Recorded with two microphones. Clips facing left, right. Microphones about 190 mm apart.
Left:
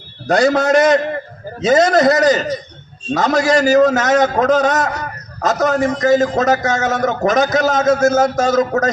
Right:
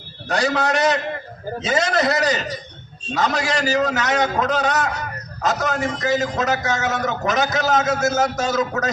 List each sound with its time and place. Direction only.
0.3 s a man's voice: 45° left (ahead or behind)